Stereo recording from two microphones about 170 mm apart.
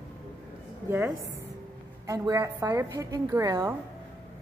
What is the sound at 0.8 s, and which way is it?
A woman's voice, 15° right (ahead or behind).